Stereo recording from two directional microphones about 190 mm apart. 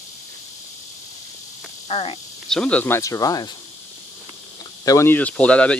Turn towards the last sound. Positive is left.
turn(degrees=5)  # may be behind; listen again after turning